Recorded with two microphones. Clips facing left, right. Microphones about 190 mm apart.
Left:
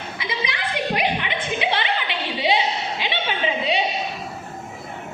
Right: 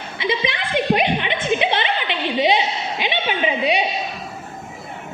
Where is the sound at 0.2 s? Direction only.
25° right (ahead or behind).